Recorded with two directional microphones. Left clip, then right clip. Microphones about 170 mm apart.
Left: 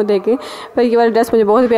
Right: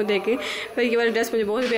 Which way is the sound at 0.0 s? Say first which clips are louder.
Left 8 dB; 45° left (ahead or behind).